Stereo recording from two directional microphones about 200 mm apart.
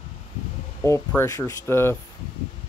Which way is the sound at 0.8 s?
15° left (ahead or behind).